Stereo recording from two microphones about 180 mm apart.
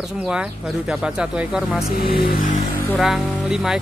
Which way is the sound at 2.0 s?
55° left (ahead or behind).